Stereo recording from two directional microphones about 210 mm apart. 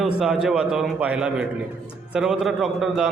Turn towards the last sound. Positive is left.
turn(degrees=0)  # may be behind; listen again after turning